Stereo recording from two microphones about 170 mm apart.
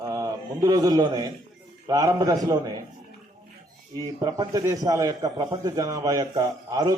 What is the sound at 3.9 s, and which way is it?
A man's voice, 20° right (ahead or behind).